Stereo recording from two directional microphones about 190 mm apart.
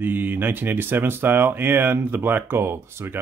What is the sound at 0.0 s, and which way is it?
Speech, 10° right (ahead or behind).